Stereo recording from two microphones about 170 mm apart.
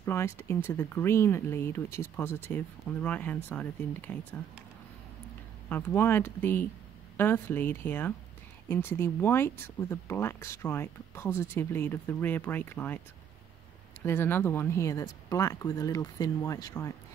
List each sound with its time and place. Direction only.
0.0 s speech: 15° left (ahead or behind)
5.7 s speech: 10° left (ahead or behind)
14.0 s speech: 15° left (ahead or behind)